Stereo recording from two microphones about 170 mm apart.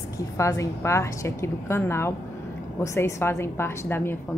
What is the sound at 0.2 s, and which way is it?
A woman's voice, 20° left (ahead or behind).